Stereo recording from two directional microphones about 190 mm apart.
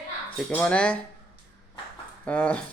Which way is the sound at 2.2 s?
5° left (ahead or behind).